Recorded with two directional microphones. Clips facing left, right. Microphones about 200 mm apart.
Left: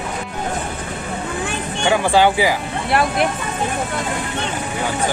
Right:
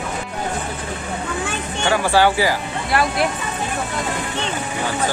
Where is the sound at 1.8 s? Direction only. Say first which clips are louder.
Left 1 dB; 20° left (ahead or behind).